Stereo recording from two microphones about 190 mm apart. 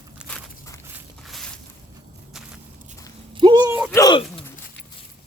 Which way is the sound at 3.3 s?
25° right (ahead or behind).